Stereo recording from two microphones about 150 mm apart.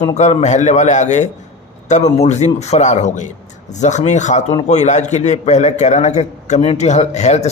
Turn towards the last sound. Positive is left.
turn(degrees=50)  # may be behind; listen again after turning